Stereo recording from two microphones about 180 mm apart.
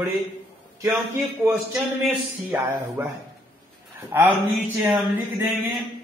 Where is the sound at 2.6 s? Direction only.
15° right (ahead or behind).